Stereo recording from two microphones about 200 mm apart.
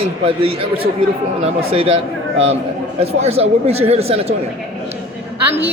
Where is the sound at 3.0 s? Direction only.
30° right (ahead or behind).